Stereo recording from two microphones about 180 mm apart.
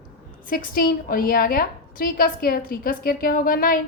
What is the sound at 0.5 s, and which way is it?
A woman's voice, 55° left (ahead or behind).